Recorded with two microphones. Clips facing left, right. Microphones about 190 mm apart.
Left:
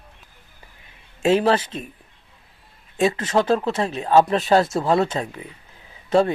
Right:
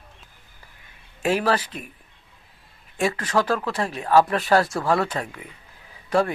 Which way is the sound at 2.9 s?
25° left (ahead or behind).